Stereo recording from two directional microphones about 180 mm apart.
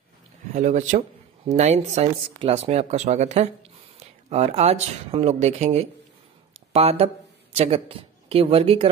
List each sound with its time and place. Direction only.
0.5 s speech: 40° right (ahead or behind)